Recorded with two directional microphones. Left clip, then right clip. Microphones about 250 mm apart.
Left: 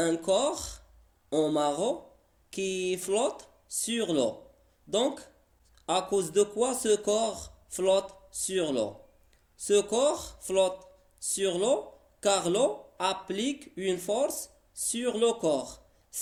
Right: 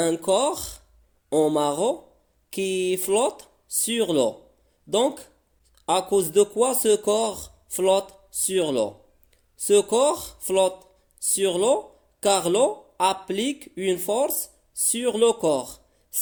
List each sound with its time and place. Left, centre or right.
0.0 s speech: right